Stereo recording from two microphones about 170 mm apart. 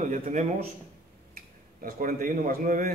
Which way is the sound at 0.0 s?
50° right (ahead or behind).